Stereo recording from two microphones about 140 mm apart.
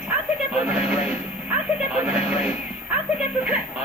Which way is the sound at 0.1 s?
10° right (ahead or behind).